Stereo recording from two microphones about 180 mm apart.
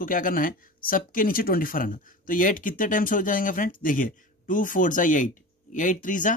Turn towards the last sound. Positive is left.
turn(degrees=45)  # may be behind; listen again after turning